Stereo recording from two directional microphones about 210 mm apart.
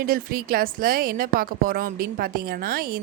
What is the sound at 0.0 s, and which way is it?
A woman's voice, 45° right (ahead or behind).